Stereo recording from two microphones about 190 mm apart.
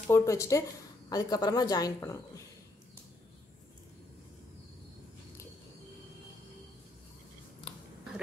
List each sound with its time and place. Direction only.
0.0 s speech: 15° left (ahead or behind)